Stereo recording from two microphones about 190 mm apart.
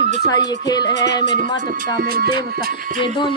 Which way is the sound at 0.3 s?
20° left (ahead or behind).